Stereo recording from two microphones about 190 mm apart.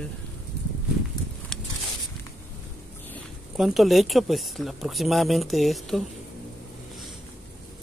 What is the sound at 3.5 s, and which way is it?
Speech, centre (ahead or behind).